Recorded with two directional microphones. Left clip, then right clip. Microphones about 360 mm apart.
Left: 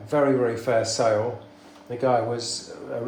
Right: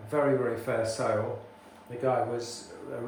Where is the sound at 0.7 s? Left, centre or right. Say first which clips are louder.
Left 9 dB; centre.